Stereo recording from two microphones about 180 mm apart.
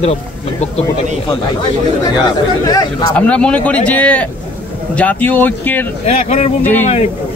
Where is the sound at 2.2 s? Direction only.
25° left (ahead or behind).